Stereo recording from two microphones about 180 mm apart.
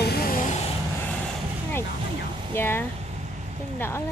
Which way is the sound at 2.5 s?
10° left (ahead or behind).